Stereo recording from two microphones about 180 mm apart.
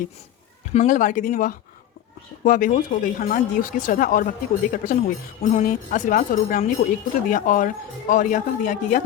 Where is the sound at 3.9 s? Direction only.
50° left (ahead or behind).